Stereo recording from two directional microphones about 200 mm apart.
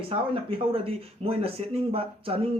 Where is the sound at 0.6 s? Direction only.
25° right (ahead or behind).